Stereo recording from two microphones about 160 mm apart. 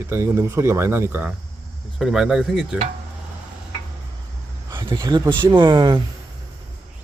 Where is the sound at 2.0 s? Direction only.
5° right (ahead or behind).